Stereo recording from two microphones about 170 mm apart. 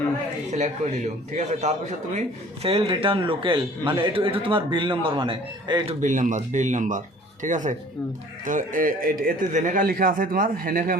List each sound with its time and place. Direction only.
0.5 s speech: 45° right (ahead or behind)